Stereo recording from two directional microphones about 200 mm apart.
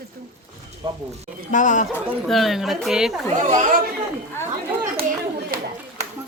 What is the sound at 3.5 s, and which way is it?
Speech, 40° right (ahead or behind).